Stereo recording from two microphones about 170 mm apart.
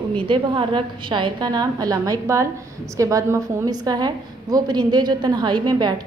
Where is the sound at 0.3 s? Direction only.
30° right (ahead or behind).